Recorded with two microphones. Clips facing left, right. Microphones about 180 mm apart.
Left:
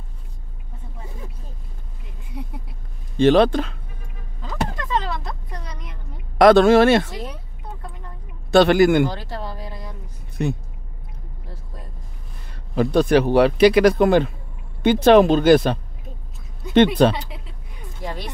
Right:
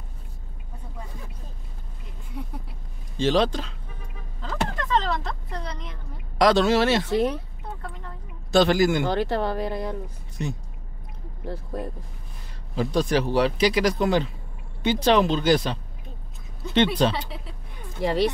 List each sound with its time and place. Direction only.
3.2 s speech: 60° left (ahead or behind)
4.4 s a sound: 10° left (ahead or behind)
6.3 s speech: 55° left (ahead or behind)
8.5 s speech: 60° left (ahead or behind)
9.1 s speech: 65° right (ahead or behind)
10.4 s speech: 60° left (ahead or behind)
11.4 s speech: 65° right (ahead or behind)
12.7 s speech: 60° left (ahead or behind)
18.0 s speech: 85° right